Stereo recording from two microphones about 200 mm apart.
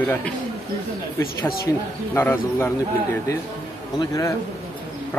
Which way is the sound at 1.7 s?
10° left (ahead or behind).